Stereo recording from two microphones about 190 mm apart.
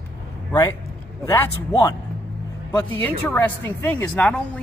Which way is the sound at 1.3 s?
20° left (ahead or behind).